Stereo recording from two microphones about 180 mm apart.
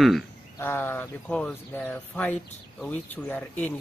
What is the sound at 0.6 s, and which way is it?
Speech, 10° left (ahead or behind).